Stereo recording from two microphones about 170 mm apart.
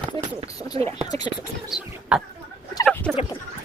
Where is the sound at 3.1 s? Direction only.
Centre (ahead or behind).